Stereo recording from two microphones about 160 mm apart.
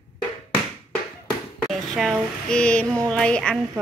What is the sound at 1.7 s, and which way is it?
Speech, centre (ahead or behind).